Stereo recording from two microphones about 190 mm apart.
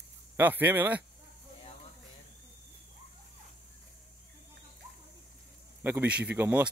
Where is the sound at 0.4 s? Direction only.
10° right (ahead or behind).